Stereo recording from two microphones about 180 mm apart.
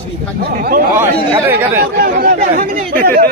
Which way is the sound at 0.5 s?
55° right (ahead or behind).